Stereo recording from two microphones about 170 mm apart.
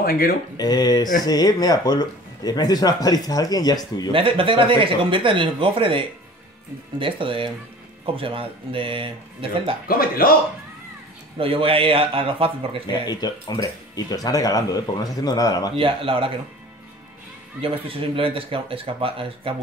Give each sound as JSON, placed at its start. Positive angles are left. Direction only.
{"t": 0.0, "sound": "speech", "side_deg": 60}
{"t": 0.6, "sound": "speech", "side_deg": 25}
{"t": 4.1, "sound": "speech", "side_deg": -30}
{"t": 9.8, "sound": "speech", "side_deg": 60}
{"t": 11.3, "sound": "speech", "side_deg": -35}
{"t": 13.1, "sound": "speech", "side_deg": 25}
{"t": 15.7, "sound": "speech", "side_deg": -30}
{"t": 17.6, "sound": "speech", "side_deg": -35}